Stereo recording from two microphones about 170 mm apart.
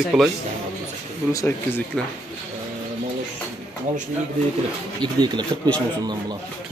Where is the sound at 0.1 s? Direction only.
Centre (ahead or behind).